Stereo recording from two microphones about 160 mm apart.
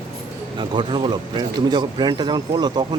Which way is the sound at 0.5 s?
30° right (ahead or behind).